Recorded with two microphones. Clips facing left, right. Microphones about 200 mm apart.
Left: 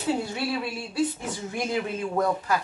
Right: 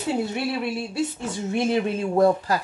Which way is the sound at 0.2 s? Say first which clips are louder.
Right 3 dB; 25° right (ahead or behind).